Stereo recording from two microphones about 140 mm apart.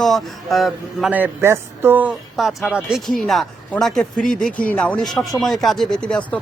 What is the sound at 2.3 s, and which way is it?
Speech, centre (ahead or behind).